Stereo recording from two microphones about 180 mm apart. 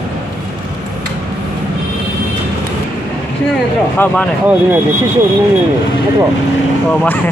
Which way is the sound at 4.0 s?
10° left (ahead or behind).